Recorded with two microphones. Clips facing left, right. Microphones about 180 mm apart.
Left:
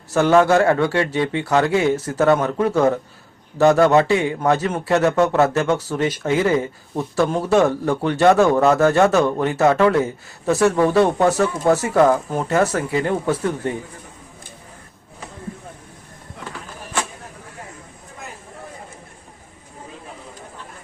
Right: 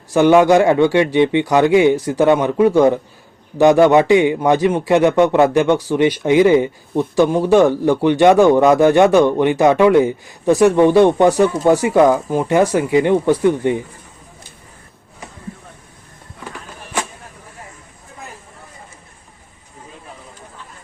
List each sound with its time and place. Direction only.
0.1 s a man's voice: 15° right (ahead or behind)